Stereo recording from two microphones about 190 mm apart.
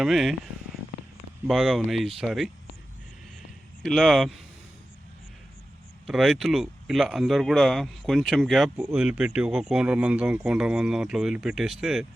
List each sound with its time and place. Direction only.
0.0 s speech: centre (ahead or behind)
1.5 s speech: centre (ahead or behind)
3.8 s speech: centre (ahead or behind)
6.1 s speech: centre (ahead or behind)